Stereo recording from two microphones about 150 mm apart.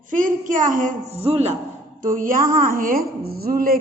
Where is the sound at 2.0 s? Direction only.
65° right (ahead or behind).